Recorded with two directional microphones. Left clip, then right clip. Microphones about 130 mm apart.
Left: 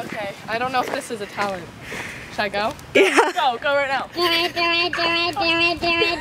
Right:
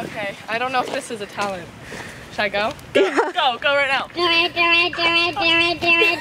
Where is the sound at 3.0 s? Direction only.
20° left (ahead or behind).